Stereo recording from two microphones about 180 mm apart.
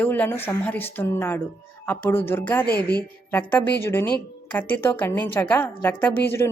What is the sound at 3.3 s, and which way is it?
A woman's voice, 10° left (ahead or behind).